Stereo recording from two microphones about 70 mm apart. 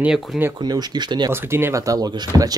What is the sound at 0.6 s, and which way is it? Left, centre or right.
Speech, right.